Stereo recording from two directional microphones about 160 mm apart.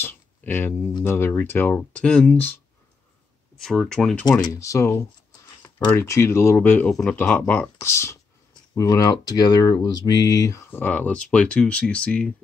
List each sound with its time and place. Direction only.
0.0 s speech: 10° left (ahead or behind)
3.5 s speech: centre (ahead or behind)
4.3 s speech: 25° left (ahead or behind); by 12.4 s 5° left (ahead or behind)